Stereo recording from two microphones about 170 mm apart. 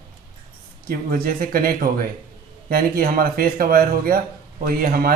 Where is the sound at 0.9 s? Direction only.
60° right (ahead or behind).